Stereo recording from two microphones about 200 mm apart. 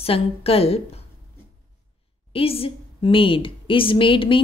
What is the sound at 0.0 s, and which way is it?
A woman's voice, 30° left (ahead or behind).